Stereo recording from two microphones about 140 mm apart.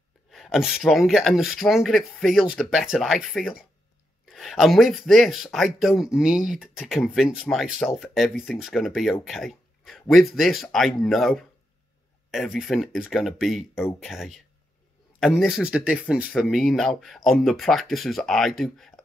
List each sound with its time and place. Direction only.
0.3 s speech: centre (ahead or behind)